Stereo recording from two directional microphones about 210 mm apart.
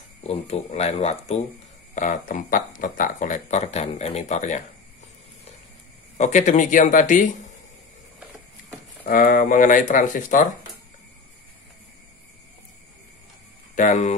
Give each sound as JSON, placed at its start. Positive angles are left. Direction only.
{"t": 0.3, "sound": "speech", "side_deg": 30}
{"t": 6.1, "sound": "speech", "side_deg": 35}
{"t": 9.0, "sound": "speech", "side_deg": 40}
{"t": 13.7, "sound": "speech", "side_deg": 35}